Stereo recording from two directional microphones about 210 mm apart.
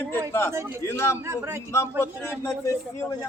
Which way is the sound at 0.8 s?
15° left (ahead or behind).